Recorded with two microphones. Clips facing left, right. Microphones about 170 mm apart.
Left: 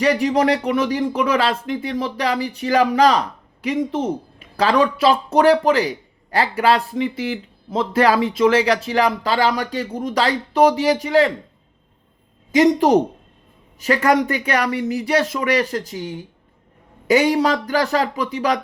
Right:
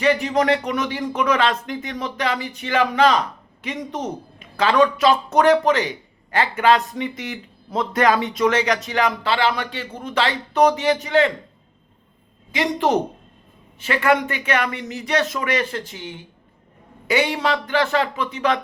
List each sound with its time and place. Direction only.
0.0 s speech: 35° left (ahead or behind)
12.5 s speech: 40° left (ahead or behind)